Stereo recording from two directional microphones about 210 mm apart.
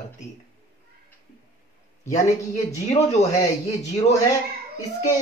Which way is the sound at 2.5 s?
30° left (ahead or behind).